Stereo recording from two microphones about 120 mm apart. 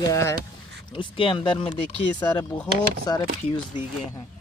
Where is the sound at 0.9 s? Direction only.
45° left (ahead or behind).